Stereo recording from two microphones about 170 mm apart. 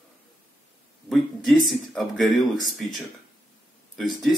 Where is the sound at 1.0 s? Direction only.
Centre (ahead or behind).